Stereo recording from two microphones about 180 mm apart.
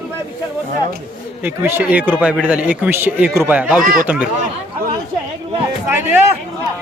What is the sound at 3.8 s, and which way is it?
Speech, 50° right (ahead or behind).